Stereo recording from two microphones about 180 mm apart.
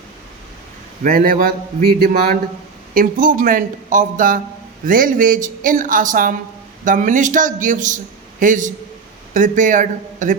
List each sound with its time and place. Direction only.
1.0 s speech: 50° right (ahead or behind)